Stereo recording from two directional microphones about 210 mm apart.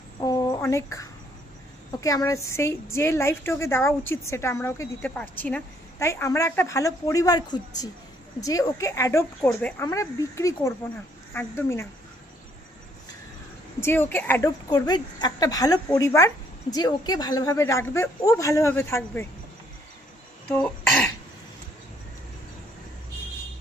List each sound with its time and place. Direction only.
0.2 s a sound: 15° left (ahead or behind)
2.0 s a woman's voice: 15° left (ahead or behind)
13.8 s a woman's voice: 10° left (ahead or behind)
20.5 s speech: 10° left (ahead or behind)